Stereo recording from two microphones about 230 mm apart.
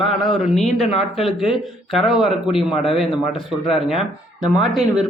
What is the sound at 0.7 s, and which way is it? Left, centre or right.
Speech, left.